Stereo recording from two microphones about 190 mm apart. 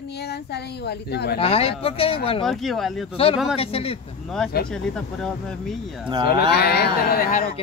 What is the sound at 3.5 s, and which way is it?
Speech, 30° left (ahead or behind).